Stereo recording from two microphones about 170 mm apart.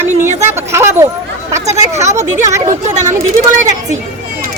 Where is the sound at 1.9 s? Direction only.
40° right (ahead or behind).